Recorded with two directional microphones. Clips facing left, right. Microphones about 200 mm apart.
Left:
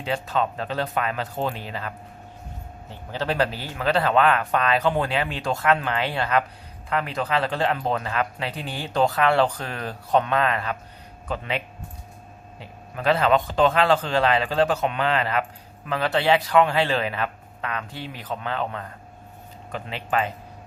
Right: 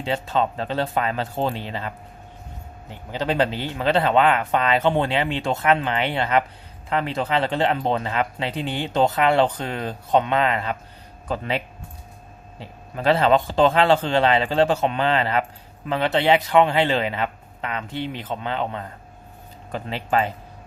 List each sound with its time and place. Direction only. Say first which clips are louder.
0.0 s speech: right 2 dB; 25° right (ahead or behind)
2.9 s speech: right 2 dB; 15° right (ahead or behind)
11.3 s speech: right 3 dB; 35° right (ahead or behind)
19.7 s speech: right 3 dB; 35° right (ahead or behind)